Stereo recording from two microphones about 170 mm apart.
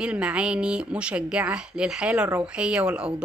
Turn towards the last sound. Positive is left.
turn(degrees=-5)  # may be behind; listen again after turning